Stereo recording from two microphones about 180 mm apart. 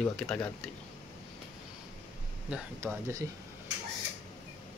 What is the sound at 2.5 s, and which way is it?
Speech, 5° right (ahead or behind).